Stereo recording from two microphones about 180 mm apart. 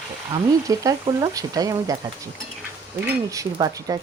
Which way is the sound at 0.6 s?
20° right (ahead or behind).